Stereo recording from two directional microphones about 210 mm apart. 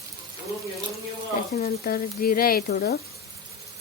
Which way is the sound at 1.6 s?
45° left (ahead or behind).